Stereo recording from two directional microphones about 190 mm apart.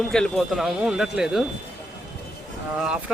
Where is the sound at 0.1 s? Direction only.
Centre (ahead or behind).